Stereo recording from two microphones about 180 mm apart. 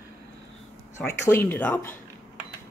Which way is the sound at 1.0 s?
15° left (ahead or behind).